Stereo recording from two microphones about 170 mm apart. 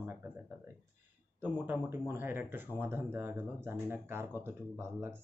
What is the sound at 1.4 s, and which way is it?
Speech, 15° right (ahead or behind).